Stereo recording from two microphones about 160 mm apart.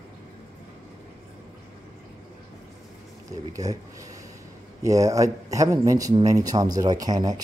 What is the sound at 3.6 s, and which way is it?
Speech, 25° right (ahead or behind).